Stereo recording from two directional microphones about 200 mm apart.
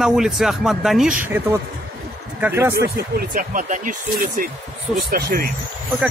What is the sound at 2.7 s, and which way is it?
Speech, 45° right (ahead or behind).